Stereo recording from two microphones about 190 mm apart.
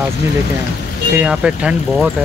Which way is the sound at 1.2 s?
5° right (ahead or behind).